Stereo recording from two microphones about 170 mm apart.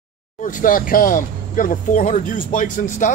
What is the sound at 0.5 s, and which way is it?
Speech, 50° left (ahead or behind).